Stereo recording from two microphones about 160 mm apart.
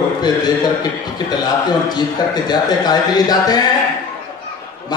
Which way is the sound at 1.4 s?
25° left (ahead or behind).